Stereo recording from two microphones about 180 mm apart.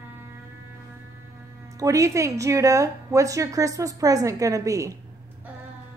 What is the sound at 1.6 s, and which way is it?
Speech, 20° right (ahead or behind).